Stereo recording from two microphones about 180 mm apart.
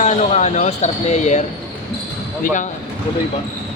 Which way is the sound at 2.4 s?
45° left (ahead or behind).